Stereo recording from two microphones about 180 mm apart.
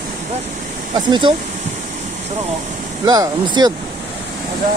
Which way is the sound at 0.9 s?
25° right (ahead or behind).